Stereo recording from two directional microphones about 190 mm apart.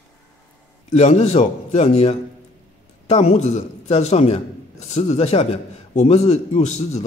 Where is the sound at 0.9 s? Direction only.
35° left (ahead or behind).